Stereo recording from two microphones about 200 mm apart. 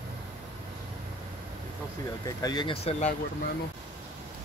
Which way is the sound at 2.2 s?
20° left (ahead or behind).